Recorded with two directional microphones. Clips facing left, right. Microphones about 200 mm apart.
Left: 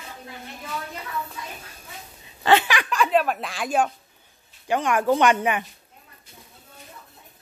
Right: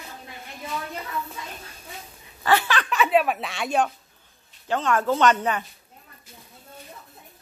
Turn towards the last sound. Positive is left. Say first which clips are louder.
# left 1 dB
turn(degrees=15)  # may be behind; listen again after turning